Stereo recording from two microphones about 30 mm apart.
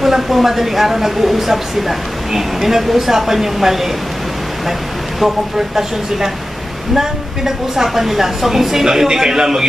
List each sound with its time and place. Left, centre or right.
0.0 s a woman's voice: centre
7.0 s a woman's voice: centre